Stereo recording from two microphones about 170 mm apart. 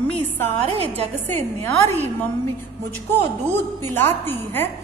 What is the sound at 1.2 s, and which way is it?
Speech, 15° left (ahead or behind).